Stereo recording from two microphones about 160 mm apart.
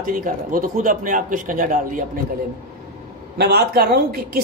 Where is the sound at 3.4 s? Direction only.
80° right.